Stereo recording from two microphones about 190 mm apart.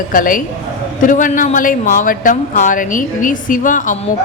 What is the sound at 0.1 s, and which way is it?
Speech, 45° left (ahead or behind).